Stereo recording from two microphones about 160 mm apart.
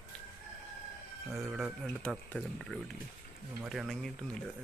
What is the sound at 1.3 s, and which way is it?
Speech, centre (ahead or behind).